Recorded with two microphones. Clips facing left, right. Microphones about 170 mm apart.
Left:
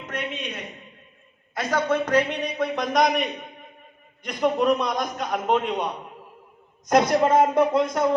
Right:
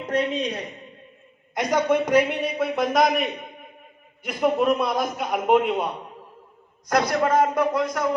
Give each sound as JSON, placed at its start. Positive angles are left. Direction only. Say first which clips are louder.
{"t": 0.0, "sound": "a man's voice", "louder": "right 8 dB", "side_deg": -35}
{"t": 1.5, "sound": "a man's voice", "louder": "right 2 dB", "side_deg": -15}
{"t": 6.8, "sound": "a man's voice", "louder": "left 3 dB", "side_deg": 25}